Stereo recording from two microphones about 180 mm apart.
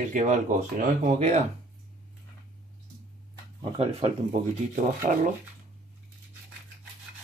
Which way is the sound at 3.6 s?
35° right (ahead or behind).